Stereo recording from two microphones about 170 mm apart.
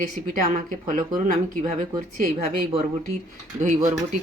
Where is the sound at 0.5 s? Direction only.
50° right (ahead or behind).